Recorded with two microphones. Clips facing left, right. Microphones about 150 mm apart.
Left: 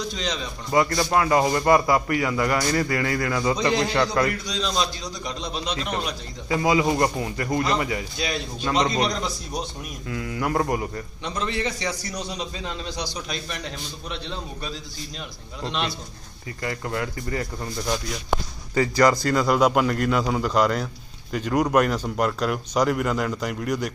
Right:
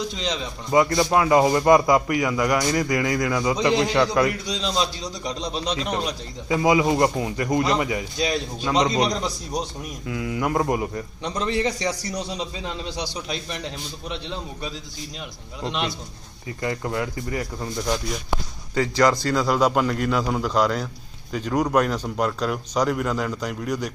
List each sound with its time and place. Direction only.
0.2 s a man's voice: 20° right (ahead or behind)
4.6 s a man's voice: 30° right (ahead or behind)
6.5 s a man's voice: 20° right (ahead or behind)
11.2 s a man's voice: 35° right (ahead or behind)
12.6 s a man's voice: 25° right (ahead or behind)
17.8 s speech: 5° left (ahead or behind)